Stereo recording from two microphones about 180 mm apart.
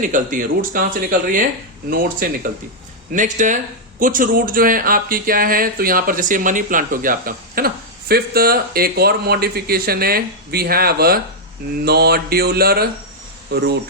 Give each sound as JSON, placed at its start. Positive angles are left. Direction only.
{"t": 0.0, "sound": "speech", "side_deg": -45}
{"t": 11.9, "sound": "mantra", "side_deg": -60}
{"t": 13.5, "sound": "speech", "side_deg": -70}